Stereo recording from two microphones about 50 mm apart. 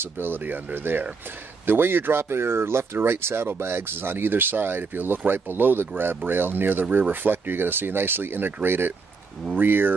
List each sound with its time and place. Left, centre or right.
0.0 s speech: right